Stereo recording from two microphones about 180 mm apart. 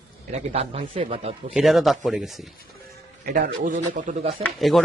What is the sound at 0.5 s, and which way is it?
Speech, 35° right (ahead or behind).